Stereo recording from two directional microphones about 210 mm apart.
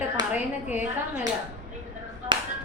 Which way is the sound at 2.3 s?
20° right (ahead or behind).